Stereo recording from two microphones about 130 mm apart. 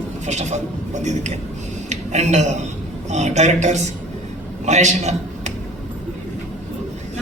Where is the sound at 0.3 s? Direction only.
60° right (ahead or behind).